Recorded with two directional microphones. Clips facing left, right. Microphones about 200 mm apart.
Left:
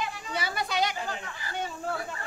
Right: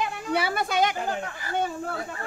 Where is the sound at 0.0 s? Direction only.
60° right (ahead or behind).